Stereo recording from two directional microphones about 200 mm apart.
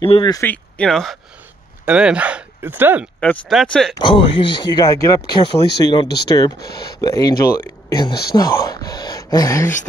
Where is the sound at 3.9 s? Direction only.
25° left (ahead or behind).